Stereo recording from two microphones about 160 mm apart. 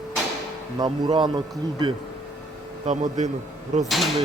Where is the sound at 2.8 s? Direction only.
50° right (ahead or behind).